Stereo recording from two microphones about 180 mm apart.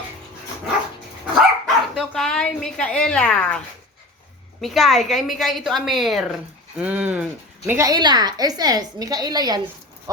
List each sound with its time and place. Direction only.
1.4 s dog: centre (ahead or behind)
4.6 s a woman's voice: centre (ahead or behind); by 9.6 s 20° right (ahead or behind)